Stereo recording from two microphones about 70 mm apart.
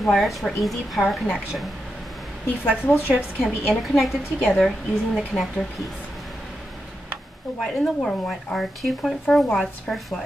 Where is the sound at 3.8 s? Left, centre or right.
Centre.